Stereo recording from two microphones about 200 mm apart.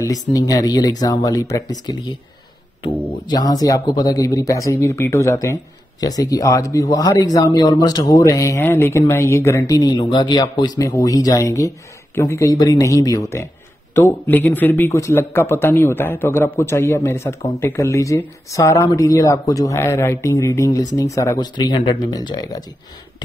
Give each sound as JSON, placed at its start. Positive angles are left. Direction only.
{"t": 0.0, "sound": "speech", "side_deg": 15}